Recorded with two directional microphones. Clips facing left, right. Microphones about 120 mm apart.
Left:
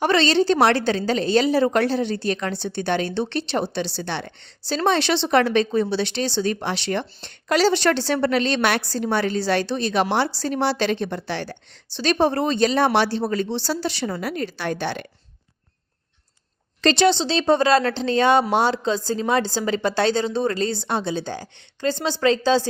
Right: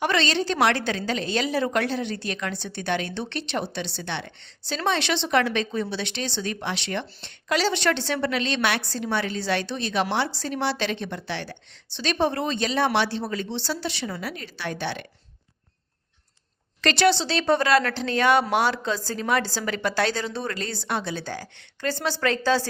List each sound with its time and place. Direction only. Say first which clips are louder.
0.0 s a woman's voice: left 6 dB; 30° left (ahead or behind)
16.8 s a woman's voice: left 3 dB; 25° left (ahead or behind)